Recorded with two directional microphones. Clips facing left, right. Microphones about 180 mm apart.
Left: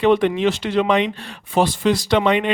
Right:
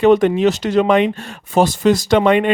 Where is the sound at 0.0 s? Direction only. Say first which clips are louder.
Right 4 dB; 45° right (ahead or behind).